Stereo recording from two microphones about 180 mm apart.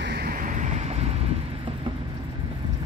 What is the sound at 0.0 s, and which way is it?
Vehicle, 60° right (ahead or behind).